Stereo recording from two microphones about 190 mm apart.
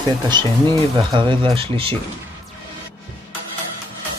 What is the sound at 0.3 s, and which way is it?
Speech, 25° right (ahead or behind).